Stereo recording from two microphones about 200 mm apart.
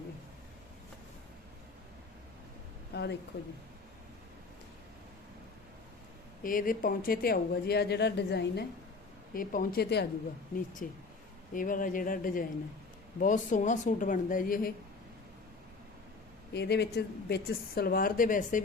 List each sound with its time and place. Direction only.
2.9 s a sound: 55° left (ahead or behind)
6.4 s speech: 45° left (ahead or behind)
9.3 s speech: 45° left (ahead or behind)
10.8 s a woman's voice: 45° left (ahead or behind)
16.5 s speech: 55° left (ahead or behind)